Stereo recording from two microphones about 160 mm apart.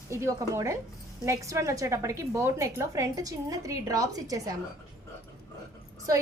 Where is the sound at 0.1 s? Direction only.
20° right (ahead or behind).